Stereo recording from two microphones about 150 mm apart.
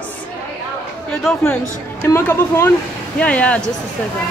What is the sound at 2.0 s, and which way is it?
A woman's voice, 15° left (ahead or behind).